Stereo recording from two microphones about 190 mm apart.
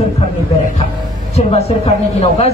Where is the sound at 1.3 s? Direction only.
35° left (ahead or behind).